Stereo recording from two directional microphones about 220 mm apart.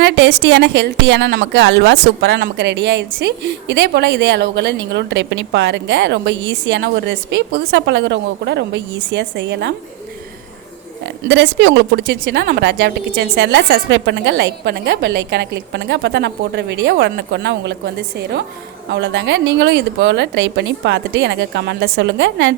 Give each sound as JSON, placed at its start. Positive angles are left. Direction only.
{"t": 0.0, "sound": "a woman's voice", "side_deg": -55}
{"t": 11.0, "sound": "a woman's voice", "side_deg": -55}